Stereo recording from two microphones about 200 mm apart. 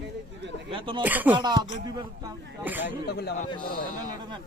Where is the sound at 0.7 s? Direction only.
25° right (ahead or behind).